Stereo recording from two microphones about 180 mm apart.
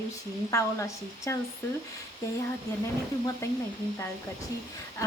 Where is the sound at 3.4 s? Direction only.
15° left (ahead or behind).